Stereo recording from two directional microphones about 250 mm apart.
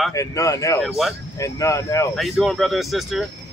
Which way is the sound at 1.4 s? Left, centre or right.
Centre.